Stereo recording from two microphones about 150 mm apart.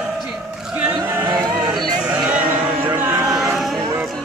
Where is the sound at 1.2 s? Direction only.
25° right (ahead or behind).